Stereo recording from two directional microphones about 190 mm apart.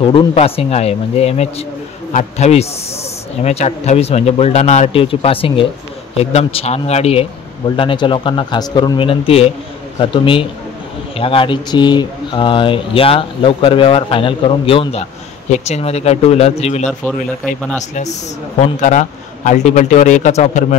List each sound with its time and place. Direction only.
0.0 s speech: 25° left (ahead or behind)
18.6 s speech: 40° left (ahead or behind)